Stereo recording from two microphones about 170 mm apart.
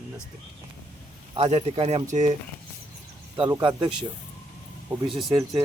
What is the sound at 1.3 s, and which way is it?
Speech, 35° right (ahead or behind).